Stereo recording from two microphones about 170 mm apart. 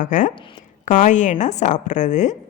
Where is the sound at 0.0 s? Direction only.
50° left (ahead or behind).